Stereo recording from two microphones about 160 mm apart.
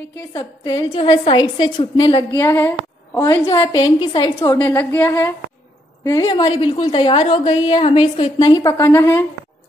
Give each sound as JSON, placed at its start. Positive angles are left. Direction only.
{"t": 0.3, "sound": "a woman's voice", "side_deg": 20}
{"t": 0.9, "sound": "a woman's voice", "side_deg": 30}
{"t": 2.4, "sound": "a woman's voice", "side_deg": 15}
{"t": 3.6, "sound": "a woman's voice", "side_deg": 30}
{"t": 4.6, "sound": "a woman's voice", "side_deg": 10}
{"t": 6.2, "sound": "a woman's voice", "side_deg": 30}